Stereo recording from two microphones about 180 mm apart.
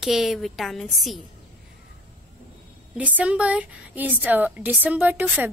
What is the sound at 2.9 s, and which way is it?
A woman's voice, 5° right (ahead or behind).